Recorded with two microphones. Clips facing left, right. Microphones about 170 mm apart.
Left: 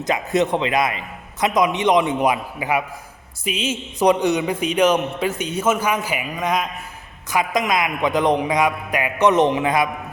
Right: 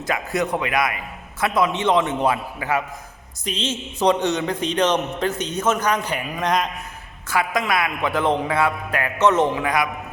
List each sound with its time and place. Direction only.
0.0 s a man's voice: 20° left (ahead or behind); by 6.7 s 5° left (ahead or behind)
7.3 s a man's voice: 15° left (ahead or behind)